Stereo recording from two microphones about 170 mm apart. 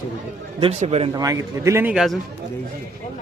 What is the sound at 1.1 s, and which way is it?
A man's voice, 20° right (ahead or behind).